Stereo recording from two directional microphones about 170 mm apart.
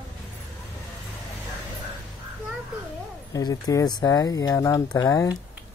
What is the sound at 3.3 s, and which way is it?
Speech, 20° left (ahead or behind).